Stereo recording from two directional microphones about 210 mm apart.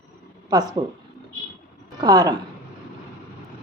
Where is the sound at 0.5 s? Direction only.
15° right (ahead or behind).